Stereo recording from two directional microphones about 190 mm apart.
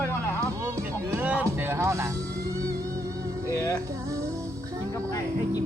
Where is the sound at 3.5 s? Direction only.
15° left (ahead or behind).